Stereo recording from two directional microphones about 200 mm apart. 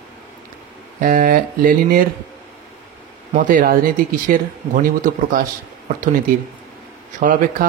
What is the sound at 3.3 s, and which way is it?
Speech, 45° right (ahead or behind).